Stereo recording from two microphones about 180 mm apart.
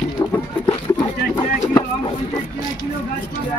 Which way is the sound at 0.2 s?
25° left (ahead or behind).